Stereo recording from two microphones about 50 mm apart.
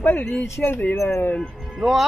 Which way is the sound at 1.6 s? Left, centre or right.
Centre.